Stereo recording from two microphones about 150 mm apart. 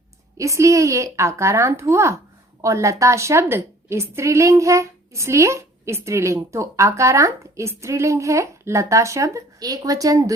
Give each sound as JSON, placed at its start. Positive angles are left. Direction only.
{"t": 0.3, "sound": "a woman's voice", "side_deg": -20}